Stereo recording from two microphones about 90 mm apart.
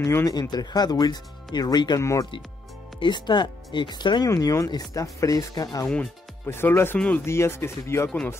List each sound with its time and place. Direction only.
0.0 s speech: 40° left (ahead or behind)
2.0 s speech: 35° left (ahead or behind)
3.0 s speech: 55° left (ahead or behind)
4.3 s speech: 40° left (ahead or behind)
6.4 s speech: 25° left (ahead or behind)